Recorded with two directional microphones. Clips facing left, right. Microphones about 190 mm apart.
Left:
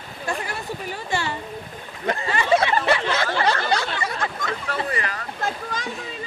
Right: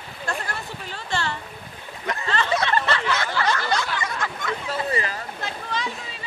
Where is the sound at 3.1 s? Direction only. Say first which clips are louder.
Left 2 dB; 30° left (ahead or behind).